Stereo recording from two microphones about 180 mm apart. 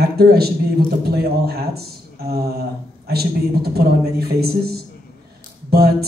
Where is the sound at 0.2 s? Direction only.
60° right (ahead or behind).